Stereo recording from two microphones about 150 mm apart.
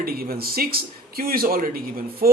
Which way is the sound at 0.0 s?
85° right.